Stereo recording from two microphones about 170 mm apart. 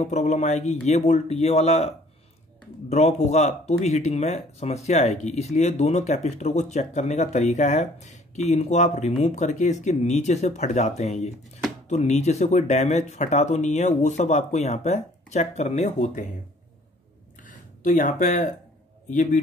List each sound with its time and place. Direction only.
0.0 s speech: 45° left (ahead or behind)
17.4 s a sound: 50° left (ahead or behind)
19.0 s speech: 45° left (ahead or behind)